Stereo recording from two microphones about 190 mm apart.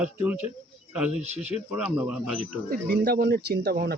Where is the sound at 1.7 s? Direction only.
5° right (ahead or behind).